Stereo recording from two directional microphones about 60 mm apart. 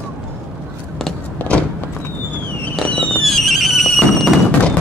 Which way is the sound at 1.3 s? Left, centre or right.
Left.